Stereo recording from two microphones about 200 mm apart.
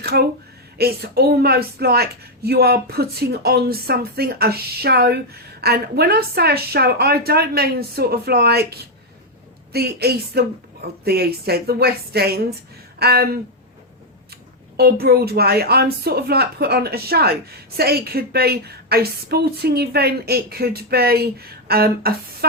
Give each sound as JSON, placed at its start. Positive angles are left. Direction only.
{"t": 0.0, "sound": "a woman's voice", "side_deg": -55}
{"t": 14.8, "sound": "a woman's voice", "side_deg": -50}